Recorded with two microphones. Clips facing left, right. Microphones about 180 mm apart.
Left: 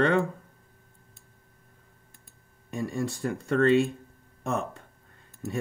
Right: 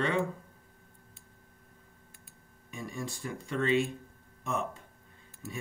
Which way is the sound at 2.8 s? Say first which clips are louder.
Left 8 dB; 65° left (ahead or behind).